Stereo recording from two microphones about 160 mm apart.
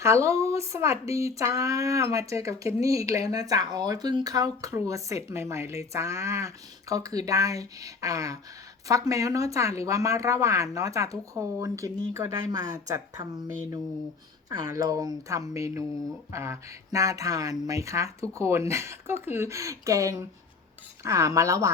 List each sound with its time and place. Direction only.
0.0 s speech: 20° right (ahead or behind)
14.5 s speech: 20° right (ahead or behind)